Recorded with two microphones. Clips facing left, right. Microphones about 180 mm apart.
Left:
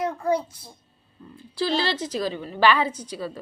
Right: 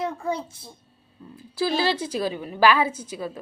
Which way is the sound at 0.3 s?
25° right (ahead or behind).